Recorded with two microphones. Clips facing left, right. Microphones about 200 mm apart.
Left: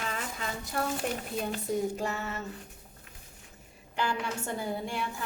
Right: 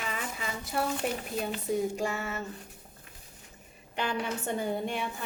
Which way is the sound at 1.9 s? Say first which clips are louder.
Right 1 dB; 10° right (ahead or behind).